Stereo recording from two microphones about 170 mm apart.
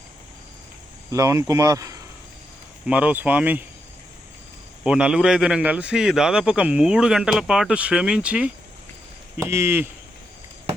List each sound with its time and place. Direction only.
1.1 s speech: 20° right (ahead or behind)
2.8 s speech: 10° right (ahead or behind)
4.8 s a man's voice: 5° right (ahead or behind)